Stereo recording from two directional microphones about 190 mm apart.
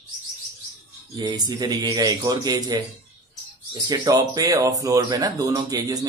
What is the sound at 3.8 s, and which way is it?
Speech, 20° right (ahead or behind).